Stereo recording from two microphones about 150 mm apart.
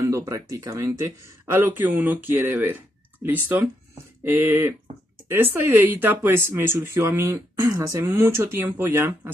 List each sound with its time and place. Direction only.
0.0 s speech: 20° right (ahead or behind)